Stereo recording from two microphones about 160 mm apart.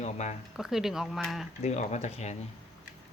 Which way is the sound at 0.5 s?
Centre (ahead or behind).